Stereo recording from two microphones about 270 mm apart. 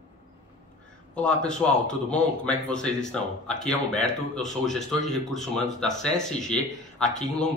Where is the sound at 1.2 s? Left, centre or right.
Centre.